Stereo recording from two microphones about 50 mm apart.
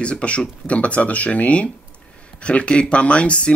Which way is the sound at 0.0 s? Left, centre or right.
Left.